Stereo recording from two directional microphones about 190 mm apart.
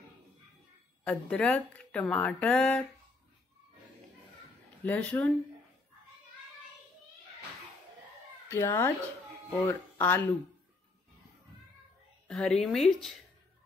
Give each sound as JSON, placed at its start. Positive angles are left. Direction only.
{"t": 1.0, "sound": "speech", "side_deg": 5}
{"t": 4.8, "sound": "speech", "side_deg": 10}
{"t": 8.5, "sound": "speech", "side_deg": 15}
{"t": 12.3, "sound": "speech", "side_deg": 0}